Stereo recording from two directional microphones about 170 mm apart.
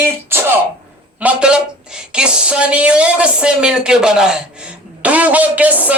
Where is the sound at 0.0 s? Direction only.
10° right (ahead or behind).